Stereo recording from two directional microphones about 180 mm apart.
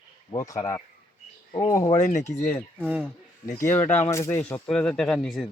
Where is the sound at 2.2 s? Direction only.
10° left (ahead or behind).